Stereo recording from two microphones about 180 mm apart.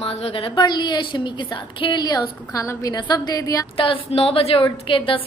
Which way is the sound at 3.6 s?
30° left (ahead or behind).